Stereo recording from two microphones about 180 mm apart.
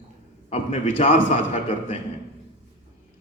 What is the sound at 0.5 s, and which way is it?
Speech, 40° left (ahead or behind).